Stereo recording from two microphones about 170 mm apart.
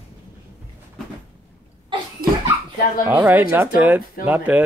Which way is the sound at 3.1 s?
10° right (ahead or behind).